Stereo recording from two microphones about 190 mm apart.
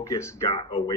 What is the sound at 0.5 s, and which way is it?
Speech, 30° left (ahead or behind).